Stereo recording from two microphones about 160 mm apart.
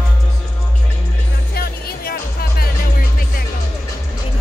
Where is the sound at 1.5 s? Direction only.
75° left (ahead or behind).